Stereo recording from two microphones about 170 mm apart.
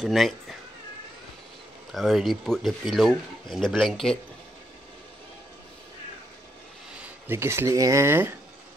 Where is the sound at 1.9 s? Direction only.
Centre (ahead or behind).